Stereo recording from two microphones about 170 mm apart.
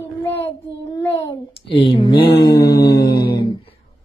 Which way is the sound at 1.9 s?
30° left (ahead or behind).